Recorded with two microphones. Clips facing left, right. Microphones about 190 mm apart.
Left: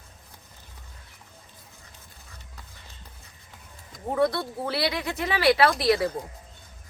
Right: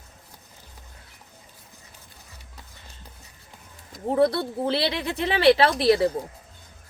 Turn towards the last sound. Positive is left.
turn(degrees=-25)  # may be behind; listen again after turning